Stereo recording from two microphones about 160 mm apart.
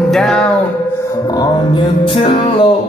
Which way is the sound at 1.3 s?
25° left (ahead or behind).